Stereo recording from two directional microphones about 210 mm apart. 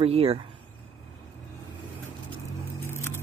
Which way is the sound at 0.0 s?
30° right (ahead or behind).